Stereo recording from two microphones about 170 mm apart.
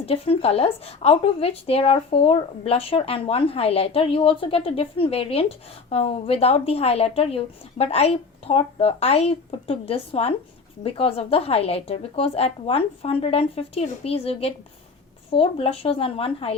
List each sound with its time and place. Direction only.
0.0 s speech: 35° left (ahead or behind)